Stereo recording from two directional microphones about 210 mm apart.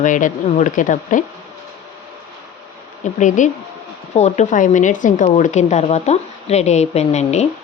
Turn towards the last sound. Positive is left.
turn(degrees=30)  # may be behind; listen again after turning